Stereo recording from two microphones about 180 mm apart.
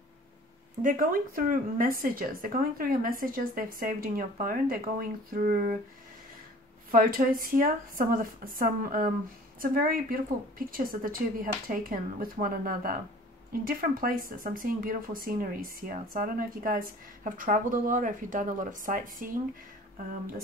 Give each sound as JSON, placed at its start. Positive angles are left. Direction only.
{"t": 0.8, "sound": "speech", "side_deg": -50}
{"t": 6.9, "sound": "speech", "side_deg": -50}